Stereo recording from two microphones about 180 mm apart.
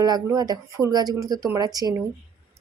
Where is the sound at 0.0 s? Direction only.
20° right (ahead or behind).